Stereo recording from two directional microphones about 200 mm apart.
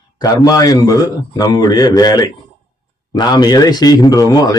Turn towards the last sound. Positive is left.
turn(degrees=20)  # may be behind; listen again after turning